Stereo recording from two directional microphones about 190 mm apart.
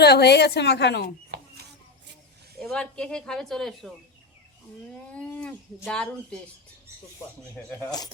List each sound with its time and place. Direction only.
0.0 s a woman's voice: 60° left (ahead or behind)
1.3 s a sound: 60° right (ahead or behind)
2.6 s speech: 5° left (ahead or behind)
5.1 s speech: 5° left (ahead or behind)
7.7 s speech: 20° left (ahead or behind)